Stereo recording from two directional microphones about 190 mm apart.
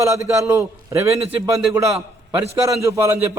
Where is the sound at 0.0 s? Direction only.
15° right (ahead or behind).